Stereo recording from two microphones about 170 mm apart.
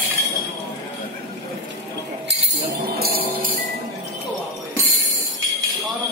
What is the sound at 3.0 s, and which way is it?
Jingle bell, 65° right (ahead or behind).